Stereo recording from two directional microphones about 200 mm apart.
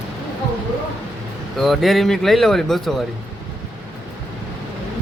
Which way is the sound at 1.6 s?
Centre (ahead or behind).